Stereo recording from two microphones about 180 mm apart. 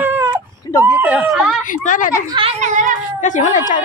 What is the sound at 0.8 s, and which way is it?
Speech, 10° right (ahead or behind).